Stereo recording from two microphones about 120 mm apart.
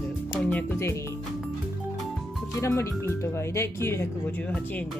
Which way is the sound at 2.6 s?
25° left (ahead or behind).